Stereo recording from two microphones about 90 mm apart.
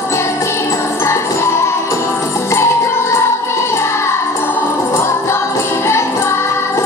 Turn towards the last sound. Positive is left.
turn(degrees=30)  # may be behind; listen again after turning